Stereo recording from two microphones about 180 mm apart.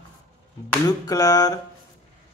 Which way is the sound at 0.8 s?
20° left (ahead or behind).